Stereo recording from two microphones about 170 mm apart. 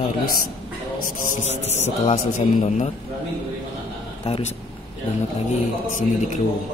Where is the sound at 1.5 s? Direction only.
40° left (ahead or behind).